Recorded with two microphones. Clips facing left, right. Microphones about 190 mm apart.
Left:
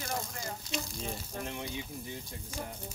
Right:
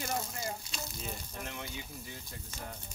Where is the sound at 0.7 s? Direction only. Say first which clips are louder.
Left 4 dB; 30° left (ahead or behind).